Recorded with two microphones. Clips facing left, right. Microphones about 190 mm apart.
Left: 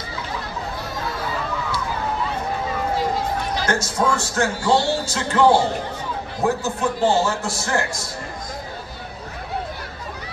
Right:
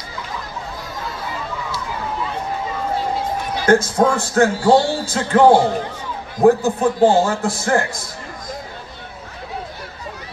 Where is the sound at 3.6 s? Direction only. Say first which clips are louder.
Right 9 dB; 55° right (ahead or behind).